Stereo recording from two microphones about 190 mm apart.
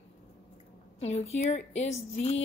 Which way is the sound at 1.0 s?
35° left (ahead or behind).